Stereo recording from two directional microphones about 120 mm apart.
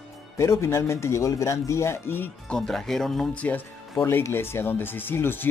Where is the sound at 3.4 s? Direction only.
15° left (ahead or behind).